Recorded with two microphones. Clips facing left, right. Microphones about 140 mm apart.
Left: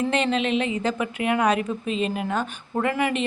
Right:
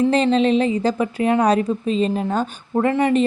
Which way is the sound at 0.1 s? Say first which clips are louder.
Right 6 dB; 35° right (ahead or behind).